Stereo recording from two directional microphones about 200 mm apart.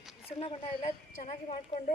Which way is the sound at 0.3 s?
30° left (ahead or behind).